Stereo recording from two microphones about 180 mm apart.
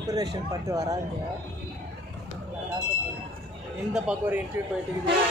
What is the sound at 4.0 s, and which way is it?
Speech, 10° right (ahead or behind).